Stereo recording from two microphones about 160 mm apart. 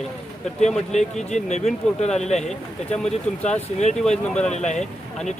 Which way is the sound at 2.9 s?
5° left (ahead or behind).